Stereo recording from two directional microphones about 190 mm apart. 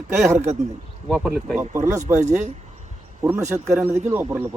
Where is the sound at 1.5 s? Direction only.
15° right (ahead or behind).